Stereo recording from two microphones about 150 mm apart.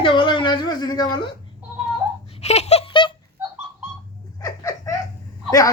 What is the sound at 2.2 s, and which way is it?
Laughter, 45° left (ahead or behind).